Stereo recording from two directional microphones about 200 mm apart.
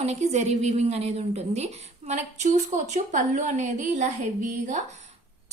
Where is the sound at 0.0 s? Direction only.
35° right (ahead or behind).